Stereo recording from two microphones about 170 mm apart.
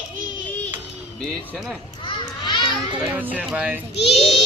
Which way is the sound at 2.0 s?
30° left (ahead or behind).